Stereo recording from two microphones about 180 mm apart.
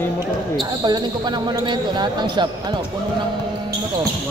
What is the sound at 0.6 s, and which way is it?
Speech, 25° right (ahead or behind).